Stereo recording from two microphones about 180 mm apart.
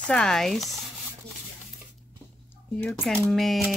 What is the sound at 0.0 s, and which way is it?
Speech, 5° left (ahead or behind).